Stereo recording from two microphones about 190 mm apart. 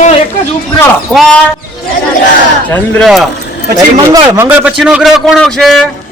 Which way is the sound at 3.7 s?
20° right (ahead or behind).